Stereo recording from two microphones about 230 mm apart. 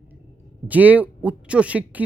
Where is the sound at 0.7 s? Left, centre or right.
Centre.